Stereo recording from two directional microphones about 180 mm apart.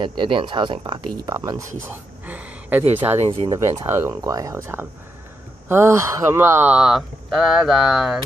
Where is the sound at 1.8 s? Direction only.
10° right (ahead or behind).